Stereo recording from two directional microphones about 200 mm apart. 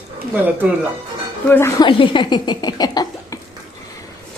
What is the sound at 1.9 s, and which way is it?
Speech, 25° left (ahead or behind).